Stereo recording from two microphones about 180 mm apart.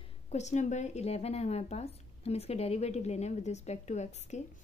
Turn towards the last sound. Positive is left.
turn(degrees=40)  # may be behind; listen again after turning